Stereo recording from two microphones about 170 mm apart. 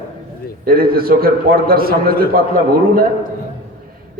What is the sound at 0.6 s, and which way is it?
A man's voice, 60° right (ahead or behind).